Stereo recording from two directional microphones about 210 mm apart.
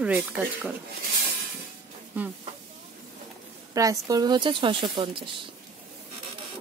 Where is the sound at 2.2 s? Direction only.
10° right (ahead or behind).